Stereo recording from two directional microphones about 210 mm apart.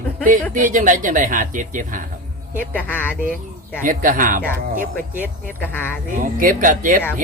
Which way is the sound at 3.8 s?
40° right (ahead or behind).